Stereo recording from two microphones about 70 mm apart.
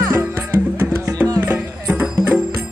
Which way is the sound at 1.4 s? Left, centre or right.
Right.